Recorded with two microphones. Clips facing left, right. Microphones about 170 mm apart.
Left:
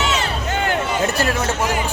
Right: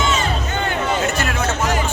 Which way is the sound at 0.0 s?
75° left (ahead or behind).